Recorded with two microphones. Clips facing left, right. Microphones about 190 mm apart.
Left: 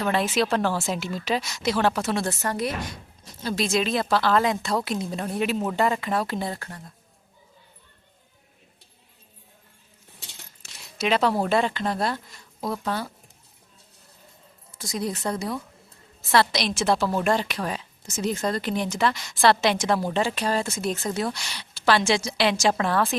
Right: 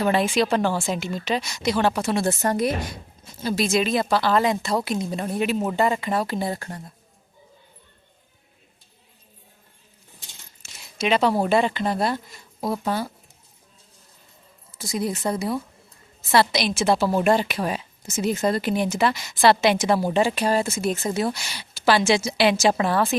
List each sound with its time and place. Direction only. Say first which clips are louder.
0.1 s speech: even; centre (ahead or behind)
2.2 s a woman's voice: right 5 dB; 25° right (ahead or behind)
3.4 s speech: right 2 dB; 5° right (ahead or behind)
6.6 s a woman's voice: right 5 dB; 30° right (ahead or behind)
10.9 s a woman's voice: right 2 dB; centre (ahead or behind)
14.7 s a woman's voice: right 3 dB; 5° right (ahead or behind)